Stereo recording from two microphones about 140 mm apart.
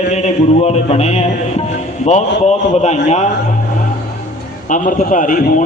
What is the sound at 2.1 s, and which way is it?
A man's voice, 55° left (ahead or behind).